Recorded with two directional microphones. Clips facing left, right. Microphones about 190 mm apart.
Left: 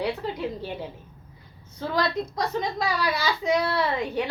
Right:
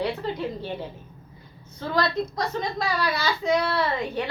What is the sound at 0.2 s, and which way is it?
Speech, 10° left (ahead or behind).